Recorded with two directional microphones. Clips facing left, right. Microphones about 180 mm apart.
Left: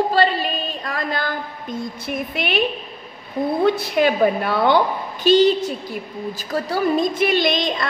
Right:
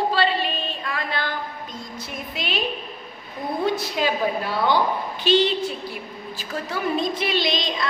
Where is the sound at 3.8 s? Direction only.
60° left (ahead or behind).